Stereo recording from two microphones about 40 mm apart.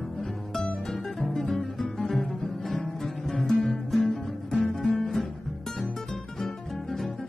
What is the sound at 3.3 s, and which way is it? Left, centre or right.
Music, centre.